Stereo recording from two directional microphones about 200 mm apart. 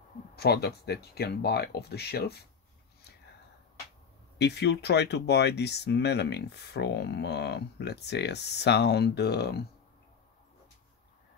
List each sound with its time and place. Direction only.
0.4 s speech: 55° left (ahead or behind)
4.4 s speech: 55° left (ahead or behind)